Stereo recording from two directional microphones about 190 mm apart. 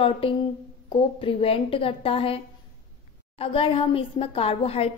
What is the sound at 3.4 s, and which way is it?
A woman's voice, 30° left (ahead or behind).